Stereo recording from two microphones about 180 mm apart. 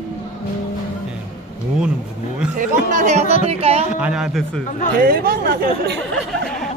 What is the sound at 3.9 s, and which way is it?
Speech, 5° right (ahead or behind).